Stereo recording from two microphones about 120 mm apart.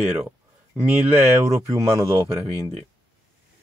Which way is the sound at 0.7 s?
10° right (ahead or behind).